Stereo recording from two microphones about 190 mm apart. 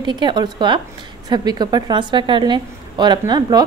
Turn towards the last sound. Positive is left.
turn(degrees=-20)  # may be behind; listen again after turning